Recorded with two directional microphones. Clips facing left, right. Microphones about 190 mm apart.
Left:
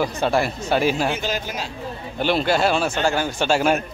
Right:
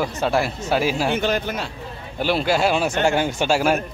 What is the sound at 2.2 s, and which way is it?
A man's voice, 5° right (ahead or behind).